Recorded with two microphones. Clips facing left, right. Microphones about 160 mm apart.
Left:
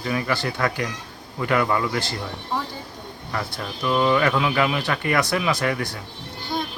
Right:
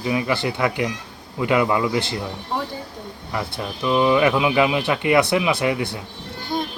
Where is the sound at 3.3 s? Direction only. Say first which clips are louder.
Right 2 dB; 15° right (ahead or behind).